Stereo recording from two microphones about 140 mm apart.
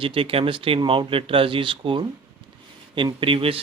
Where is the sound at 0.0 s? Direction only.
40° right (ahead or behind).